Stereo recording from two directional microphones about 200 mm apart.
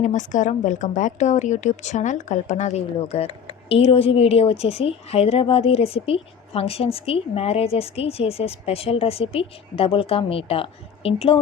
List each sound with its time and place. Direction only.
0.0 s a woman's voice: 40° left (ahead or behind)